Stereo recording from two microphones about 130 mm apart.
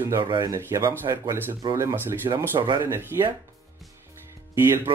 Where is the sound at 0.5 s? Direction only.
20° right (ahead or behind).